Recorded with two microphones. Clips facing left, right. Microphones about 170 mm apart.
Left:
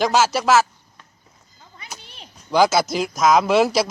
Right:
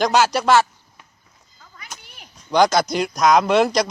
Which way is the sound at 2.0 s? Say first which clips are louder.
Left 3 dB; 30° left (ahead or behind).